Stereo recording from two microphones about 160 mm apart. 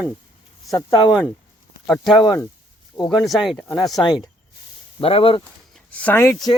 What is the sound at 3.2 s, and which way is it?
Speech, centre (ahead or behind).